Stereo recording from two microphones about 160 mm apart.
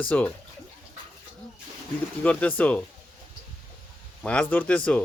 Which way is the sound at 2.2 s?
10° left (ahead or behind).